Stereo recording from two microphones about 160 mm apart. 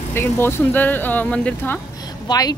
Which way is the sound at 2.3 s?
25° left (ahead or behind).